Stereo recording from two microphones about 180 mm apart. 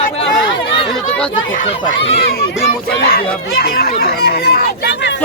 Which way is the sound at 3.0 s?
60° left (ahead or behind).